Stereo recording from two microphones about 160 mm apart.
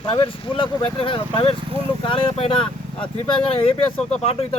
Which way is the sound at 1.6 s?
35° right (ahead or behind).